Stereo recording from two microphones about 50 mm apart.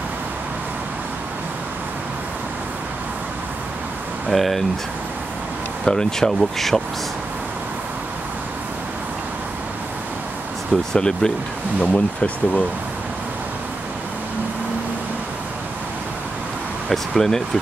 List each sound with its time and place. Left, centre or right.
4.3 s speech: centre
5.9 s speech: centre
10.9 s speech: centre
11.8 s speech: left
16.9 s speech: centre